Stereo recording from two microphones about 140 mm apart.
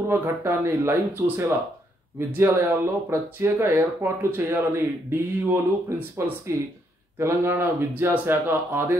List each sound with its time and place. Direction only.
0.1 s speech: 20° right (ahead or behind)